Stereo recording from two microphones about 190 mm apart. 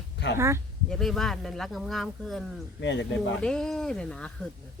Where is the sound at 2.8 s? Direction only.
75° left (ahead or behind).